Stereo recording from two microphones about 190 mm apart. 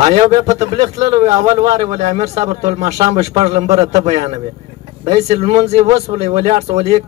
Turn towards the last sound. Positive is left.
turn(degrees=-35)  # may be behind; listen again after turning